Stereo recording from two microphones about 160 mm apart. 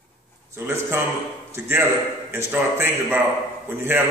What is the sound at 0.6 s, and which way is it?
Speech, 15° right (ahead or behind).